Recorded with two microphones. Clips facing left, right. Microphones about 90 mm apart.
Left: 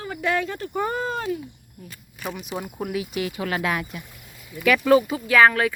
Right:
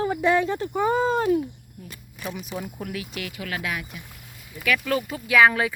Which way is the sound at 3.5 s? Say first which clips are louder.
Left 5 dB; 40° left (ahead or behind).